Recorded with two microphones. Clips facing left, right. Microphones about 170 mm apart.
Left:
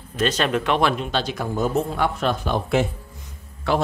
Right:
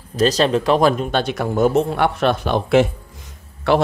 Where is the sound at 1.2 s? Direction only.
70° right (ahead or behind).